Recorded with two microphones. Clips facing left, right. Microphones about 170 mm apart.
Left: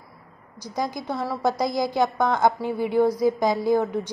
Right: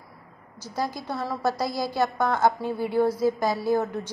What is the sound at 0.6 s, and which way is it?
A woman's voice, 15° left (ahead or behind).